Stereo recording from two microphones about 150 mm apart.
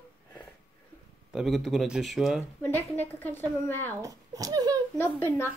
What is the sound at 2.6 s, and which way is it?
A woman's voice, 10° left (ahead or behind).